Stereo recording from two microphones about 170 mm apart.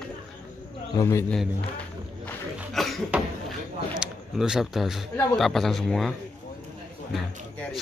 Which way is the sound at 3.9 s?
5° right (ahead or behind).